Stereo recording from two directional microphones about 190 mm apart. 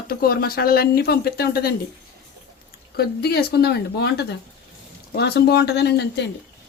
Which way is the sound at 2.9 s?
55° left (ahead or behind).